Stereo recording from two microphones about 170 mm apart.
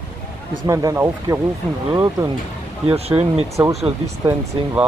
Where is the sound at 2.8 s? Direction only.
35° right (ahead or behind).